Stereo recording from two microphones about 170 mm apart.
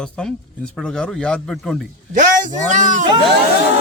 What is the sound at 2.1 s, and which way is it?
Speech, 50° right (ahead or behind).